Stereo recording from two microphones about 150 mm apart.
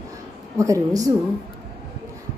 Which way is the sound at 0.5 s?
20° right (ahead or behind).